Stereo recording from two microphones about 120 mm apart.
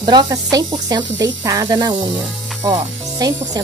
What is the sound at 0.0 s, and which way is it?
Speech, 35° right (ahead or behind).